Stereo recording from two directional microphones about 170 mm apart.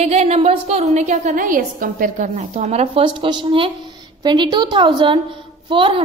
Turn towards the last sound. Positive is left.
turn(degrees=-30)  # may be behind; listen again after turning